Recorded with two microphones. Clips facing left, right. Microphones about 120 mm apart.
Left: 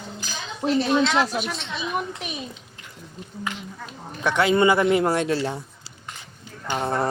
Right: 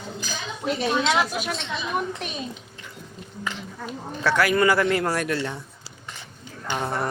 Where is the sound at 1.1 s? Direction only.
5° right (ahead or behind).